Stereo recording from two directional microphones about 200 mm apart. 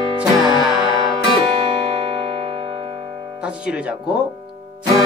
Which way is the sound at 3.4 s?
5° right (ahead or behind).